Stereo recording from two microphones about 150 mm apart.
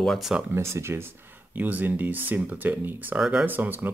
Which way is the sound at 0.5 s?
15° right (ahead or behind).